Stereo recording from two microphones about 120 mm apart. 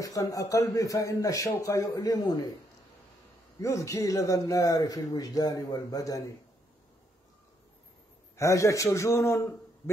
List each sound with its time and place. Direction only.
0.0 s speech: 30° left (ahead or behind)
3.6 s speech: 25° left (ahead or behind)
8.4 s speech: 25° left (ahead or behind)